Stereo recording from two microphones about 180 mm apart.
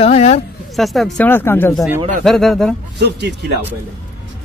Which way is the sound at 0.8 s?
Centre (ahead or behind).